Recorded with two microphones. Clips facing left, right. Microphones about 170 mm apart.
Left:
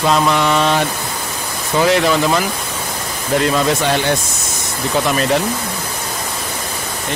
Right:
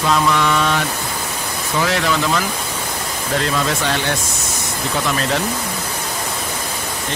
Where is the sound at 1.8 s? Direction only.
20° left (ahead or behind).